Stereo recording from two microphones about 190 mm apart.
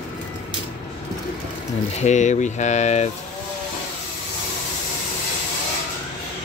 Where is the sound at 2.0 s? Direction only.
40° left (ahead or behind).